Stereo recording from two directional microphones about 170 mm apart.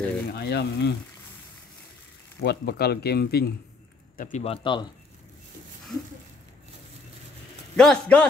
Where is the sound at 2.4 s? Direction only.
70° left (ahead or behind).